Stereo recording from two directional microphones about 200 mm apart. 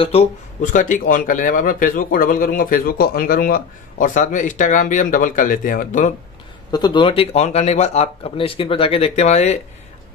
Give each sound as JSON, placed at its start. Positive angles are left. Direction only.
{"t": 0.0, "sound": "speech", "side_deg": 30}
{"t": 6.7, "sound": "speech", "side_deg": 20}